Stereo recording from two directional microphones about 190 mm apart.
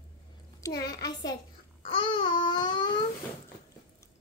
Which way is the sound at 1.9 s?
25° left (ahead or behind).